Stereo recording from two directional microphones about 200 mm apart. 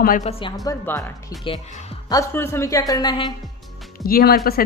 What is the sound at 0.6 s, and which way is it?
A woman's voice, 15° left (ahead or behind).